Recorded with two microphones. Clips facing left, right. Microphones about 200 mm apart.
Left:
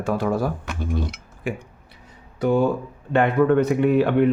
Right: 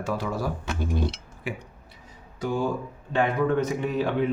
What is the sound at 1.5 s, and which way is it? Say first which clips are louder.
Speech: left 5 dB; 50° left (ahead or behind).